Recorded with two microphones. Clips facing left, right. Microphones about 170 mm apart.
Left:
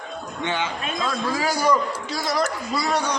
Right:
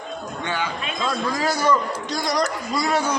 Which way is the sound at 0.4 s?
20° left (ahead or behind).